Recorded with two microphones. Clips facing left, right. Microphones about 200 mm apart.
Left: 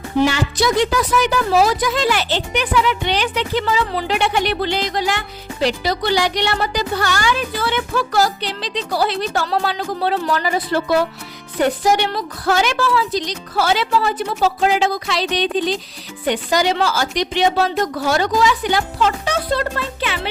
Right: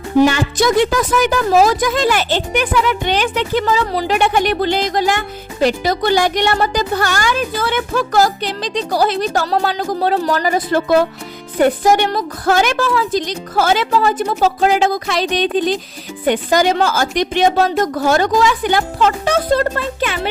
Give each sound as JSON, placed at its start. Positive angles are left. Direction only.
{"t": 0.3, "sound": "speech", "side_deg": -50}